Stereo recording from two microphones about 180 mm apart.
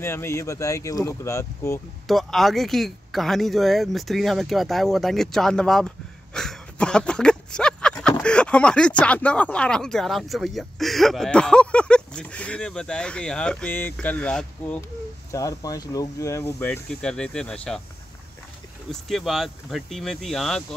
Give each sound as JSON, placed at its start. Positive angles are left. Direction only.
{"t": 0.0, "sound": "speech", "side_deg": 15}
{"t": 2.0, "sound": "speech", "side_deg": 0}
{"t": 8.2, "sound": "a sound", "side_deg": 5}
{"t": 9.0, "sound": "speech", "side_deg": 5}
{"t": 15.3, "sound": "speech", "side_deg": 20}
{"t": 18.9, "sound": "speech", "side_deg": 0}